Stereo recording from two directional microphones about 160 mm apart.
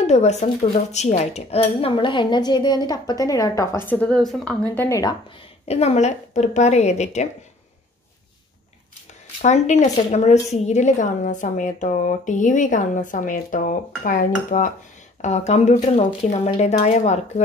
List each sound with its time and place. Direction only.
0.0 s speech: 45° left (ahead or behind); by 4.6 s 5° left (ahead or behind)
4.7 s speech: 20° left (ahead or behind)
5.7 s a woman's voice: 40° left (ahead or behind)
9.4 s a woman's voice: 45° left (ahead or behind)
15.2 s a woman's voice: 45° left (ahead or behind)